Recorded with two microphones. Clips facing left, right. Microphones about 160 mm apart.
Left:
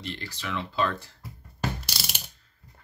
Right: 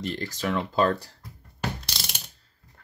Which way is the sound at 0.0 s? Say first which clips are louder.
Right 7 dB; 45° right (ahead or behind).